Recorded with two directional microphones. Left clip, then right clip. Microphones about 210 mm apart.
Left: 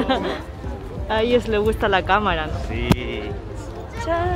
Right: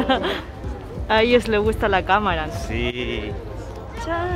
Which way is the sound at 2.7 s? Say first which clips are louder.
Left 2 dB; 55° right (ahead or behind).